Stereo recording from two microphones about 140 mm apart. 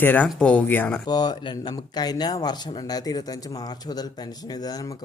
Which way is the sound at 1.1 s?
30° left (ahead or behind).